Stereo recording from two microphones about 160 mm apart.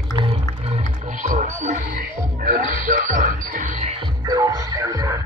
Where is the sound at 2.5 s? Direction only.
60° right (ahead or behind).